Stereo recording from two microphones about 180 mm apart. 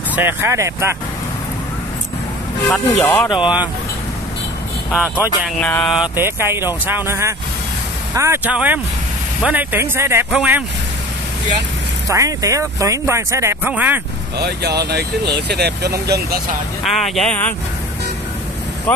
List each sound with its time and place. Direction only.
0.1 s speech: 10° right (ahead or behind)
2.7 s speech: 5° left (ahead or behind)
3.3 s speech: 25° left (ahead or behind)
4.9 s speech: 5° right (ahead or behind)
5.6 s speech: 5° left (ahead or behind)
6.1 s speech: 15° right (ahead or behind)
12.1 s speech: 20° right (ahead or behind)
14.4 s speech: 65° right (ahead or behind)
16.8 s speech: centre (ahead or behind)
18.9 s speech: 5° left (ahead or behind)